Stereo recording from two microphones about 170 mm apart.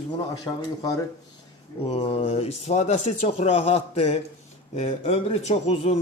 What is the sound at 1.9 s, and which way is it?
Speech, 35° left (ahead or behind).